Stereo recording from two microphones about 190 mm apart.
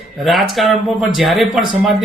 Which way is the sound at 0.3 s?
Centre (ahead or behind).